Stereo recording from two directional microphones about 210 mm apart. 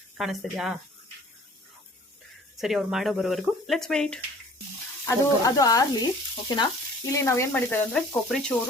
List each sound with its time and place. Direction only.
0.2 s speech: centre (ahead or behind)
2.6 s speech: centre (ahead or behind)
5.0 s speech: 15° left (ahead or behind)
7.1 s speech: 15° left (ahead or behind)